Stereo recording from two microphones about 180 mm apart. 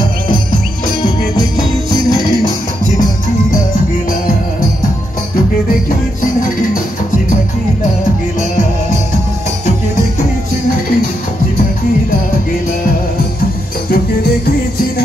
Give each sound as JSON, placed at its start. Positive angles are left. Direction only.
{"t": 2.0, "sound": "music", "side_deg": -55}
{"t": 3.5, "sound": "music", "side_deg": 50}